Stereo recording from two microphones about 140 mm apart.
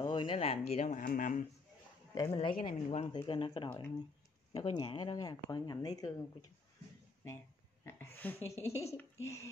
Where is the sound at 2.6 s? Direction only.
40° left (ahead or behind).